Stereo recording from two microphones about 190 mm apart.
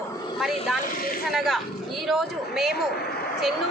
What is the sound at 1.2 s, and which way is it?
A woman's voice, centre (ahead or behind).